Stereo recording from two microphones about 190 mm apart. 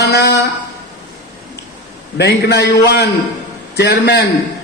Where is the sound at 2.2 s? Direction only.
60° left (ahead or behind).